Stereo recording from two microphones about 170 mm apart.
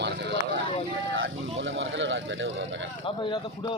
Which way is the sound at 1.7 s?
90° right.